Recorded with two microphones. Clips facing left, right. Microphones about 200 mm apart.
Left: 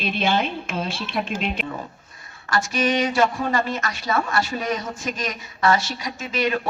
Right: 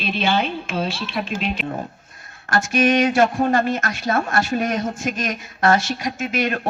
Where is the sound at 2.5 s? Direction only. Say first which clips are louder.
Right 4 dB; 50° right (ahead or behind).